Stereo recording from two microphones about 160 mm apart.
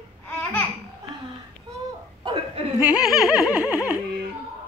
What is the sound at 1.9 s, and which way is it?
Laughter, 30° right (ahead or behind).